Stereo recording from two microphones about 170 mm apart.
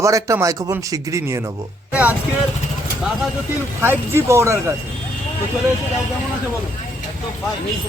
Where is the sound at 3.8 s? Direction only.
15° right (ahead or behind).